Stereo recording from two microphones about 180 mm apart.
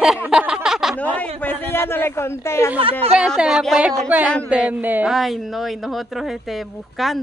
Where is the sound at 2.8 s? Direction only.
30° right (ahead or behind).